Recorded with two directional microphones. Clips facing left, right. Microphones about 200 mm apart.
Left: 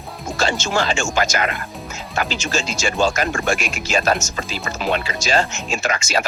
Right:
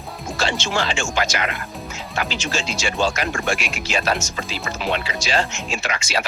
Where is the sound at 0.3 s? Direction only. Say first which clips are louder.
Left 3 dB; 45° left (ahead or behind).